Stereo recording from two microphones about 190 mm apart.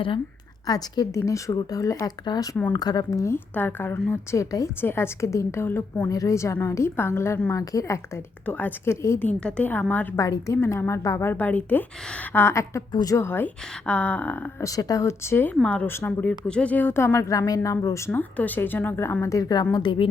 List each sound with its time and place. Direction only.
0.7 s a woman's voice: 20° left (ahead or behind)